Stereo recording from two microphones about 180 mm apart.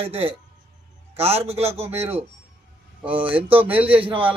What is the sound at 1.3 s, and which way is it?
Speech, 35° right (ahead or behind).